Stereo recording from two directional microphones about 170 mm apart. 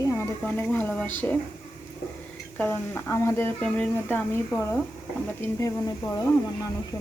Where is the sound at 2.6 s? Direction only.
10° left (ahead or behind).